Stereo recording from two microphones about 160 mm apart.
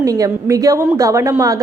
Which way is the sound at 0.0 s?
20° right (ahead or behind).